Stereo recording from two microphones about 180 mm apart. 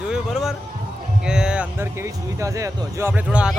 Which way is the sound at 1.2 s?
5° right (ahead or behind).